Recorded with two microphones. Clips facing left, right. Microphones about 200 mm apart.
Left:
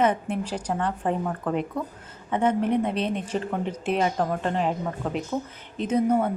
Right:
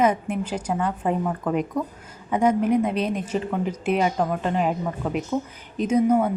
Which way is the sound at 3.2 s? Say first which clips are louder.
Right 2 dB; 5° right (ahead or behind).